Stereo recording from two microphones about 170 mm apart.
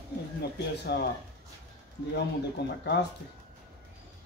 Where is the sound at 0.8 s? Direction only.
75° left (ahead or behind).